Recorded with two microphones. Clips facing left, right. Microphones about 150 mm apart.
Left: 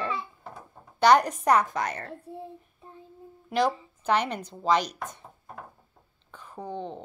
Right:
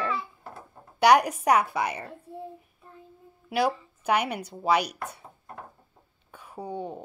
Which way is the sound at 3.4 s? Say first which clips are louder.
Even; 10° right (ahead or behind).